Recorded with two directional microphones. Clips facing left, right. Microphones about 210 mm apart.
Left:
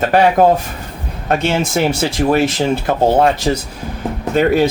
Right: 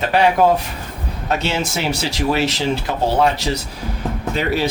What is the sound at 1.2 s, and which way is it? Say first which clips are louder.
Speech: left 5 dB; 50° left (ahead or behind).